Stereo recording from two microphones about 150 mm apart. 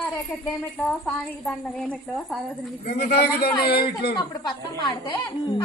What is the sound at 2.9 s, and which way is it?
Speech, 90° left.